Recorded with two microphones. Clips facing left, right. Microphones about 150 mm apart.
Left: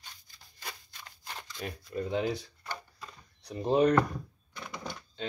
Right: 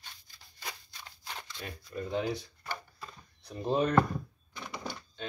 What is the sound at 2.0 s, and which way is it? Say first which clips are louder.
Speech: left 1 dB; 25° left (ahead or behind).